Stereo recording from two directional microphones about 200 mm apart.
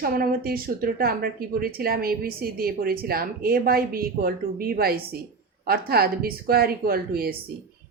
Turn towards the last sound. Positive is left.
turn(degrees=-50)  # may be behind; listen again after turning